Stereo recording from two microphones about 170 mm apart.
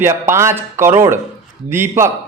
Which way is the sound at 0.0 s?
15° right (ahead or behind).